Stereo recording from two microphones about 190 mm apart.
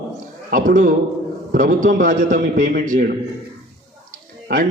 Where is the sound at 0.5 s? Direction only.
45° right (ahead or behind).